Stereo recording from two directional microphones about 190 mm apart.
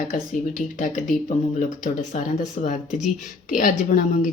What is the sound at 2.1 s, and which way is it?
A woman's voice, 35° left (ahead or behind).